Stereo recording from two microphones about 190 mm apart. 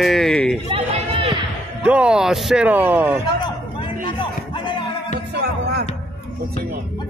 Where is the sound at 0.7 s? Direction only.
30° right (ahead or behind).